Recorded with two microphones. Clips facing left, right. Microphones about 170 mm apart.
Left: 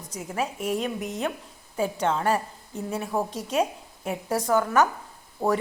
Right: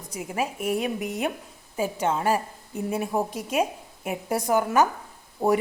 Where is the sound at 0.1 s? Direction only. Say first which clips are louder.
Right 1 dB; 10° right (ahead or behind).